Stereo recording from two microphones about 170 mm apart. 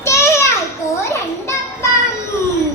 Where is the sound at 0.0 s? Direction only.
15° left (ahead or behind).